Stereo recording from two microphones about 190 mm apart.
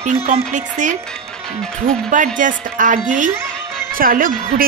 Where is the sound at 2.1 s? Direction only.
45° right (ahead or behind).